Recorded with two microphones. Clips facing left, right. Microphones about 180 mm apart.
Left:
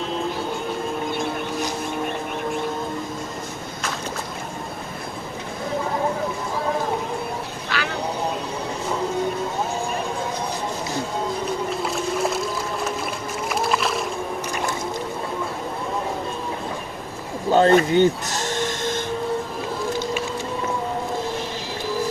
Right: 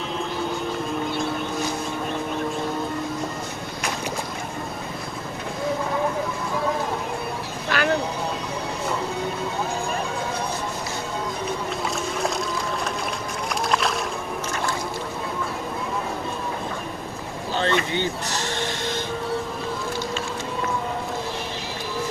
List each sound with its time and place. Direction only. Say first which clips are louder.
7.7 s vehicle: right 3 dB; 50° right (ahead or behind)
11.9 s boat: left 2 dB; centre (ahead or behind)
17.5 s a sound: left 9 dB; 45° left (ahead or behind)